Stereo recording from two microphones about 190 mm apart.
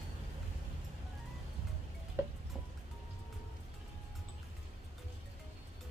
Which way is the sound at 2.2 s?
15° right (ahead or behind).